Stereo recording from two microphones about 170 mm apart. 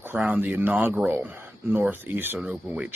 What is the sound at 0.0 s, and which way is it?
A man's voice, 10° right (ahead or behind).